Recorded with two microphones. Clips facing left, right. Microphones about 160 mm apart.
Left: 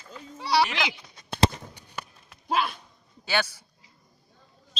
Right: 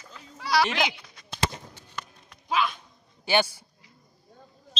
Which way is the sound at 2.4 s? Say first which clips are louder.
Even; 50° left (ahead or behind).